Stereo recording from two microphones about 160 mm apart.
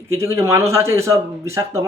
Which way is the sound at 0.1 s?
15° right (ahead or behind).